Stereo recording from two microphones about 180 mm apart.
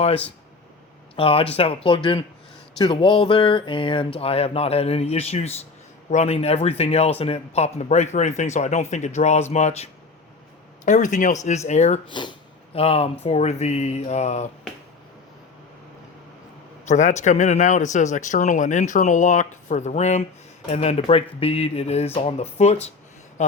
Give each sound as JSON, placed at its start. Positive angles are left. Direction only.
{"t": 1.1, "sound": "speech", "side_deg": 30}
{"t": 16.9, "sound": "speech", "side_deg": 40}